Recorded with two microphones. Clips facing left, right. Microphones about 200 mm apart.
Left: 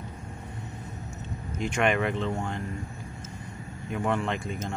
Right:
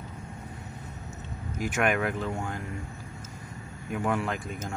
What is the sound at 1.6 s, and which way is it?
Speech, 5° right (ahead or behind).